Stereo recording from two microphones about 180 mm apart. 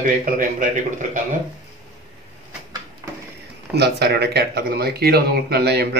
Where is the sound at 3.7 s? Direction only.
65° right (ahead or behind).